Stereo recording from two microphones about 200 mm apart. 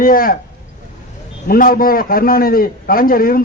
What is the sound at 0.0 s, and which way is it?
Speech, 45° left (ahead or behind).